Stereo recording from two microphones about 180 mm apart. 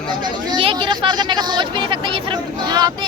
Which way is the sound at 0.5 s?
30° right (ahead or behind).